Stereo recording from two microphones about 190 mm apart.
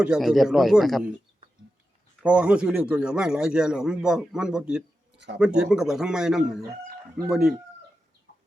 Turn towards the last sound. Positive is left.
turn(degrees=-5)  # may be behind; listen again after turning